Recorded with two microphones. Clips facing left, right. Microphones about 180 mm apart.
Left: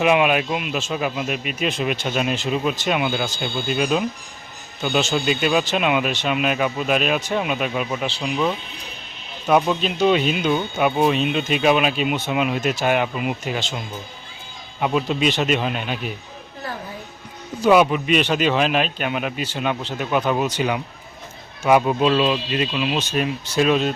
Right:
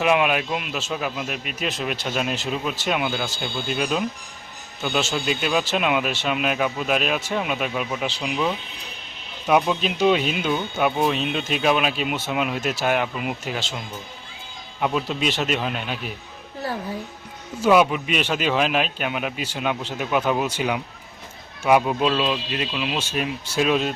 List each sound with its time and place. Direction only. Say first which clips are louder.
0.0 s speech: left 3 dB; 5° left (ahead or behind)
9.5 s speech: left 2 dB; 5° right (ahead or behind)
14.8 s speech: left 3 dB; 5° left (ahead or behind)
17.6 s speech: left 2 dB; centre (ahead or behind)